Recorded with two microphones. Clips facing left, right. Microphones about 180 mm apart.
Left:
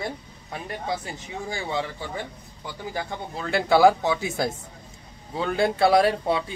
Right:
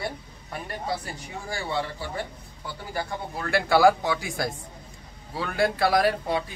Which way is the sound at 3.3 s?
20° left (ahead or behind).